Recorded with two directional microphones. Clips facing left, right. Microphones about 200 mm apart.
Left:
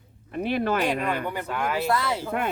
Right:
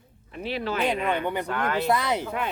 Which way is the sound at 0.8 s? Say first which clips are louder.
Even; 20° right (ahead or behind).